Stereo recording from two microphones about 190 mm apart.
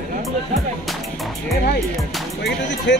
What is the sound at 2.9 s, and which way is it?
Speech, 65° left (ahead or behind).